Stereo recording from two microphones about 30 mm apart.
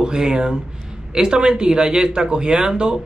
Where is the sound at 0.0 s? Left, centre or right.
Right.